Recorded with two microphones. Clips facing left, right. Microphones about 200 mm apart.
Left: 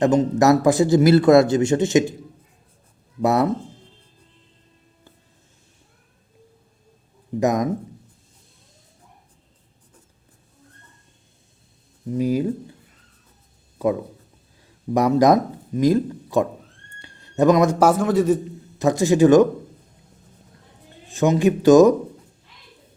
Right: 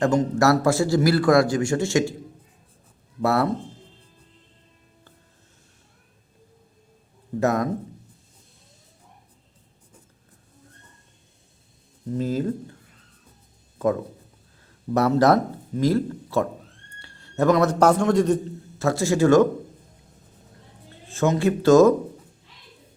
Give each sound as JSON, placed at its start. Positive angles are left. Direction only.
{"t": 0.0, "sound": "a man's voice", "side_deg": 20}
{"t": 3.2, "sound": "a man's voice", "side_deg": 20}
{"t": 7.3, "sound": "speech", "side_deg": 15}
{"t": 12.1, "sound": "speech", "side_deg": 15}
{"t": 14.9, "sound": "a man's voice", "side_deg": 15}
{"t": 18.8, "sound": "speech", "side_deg": 20}
{"t": 21.1, "sound": "speech", "side_deg": 15}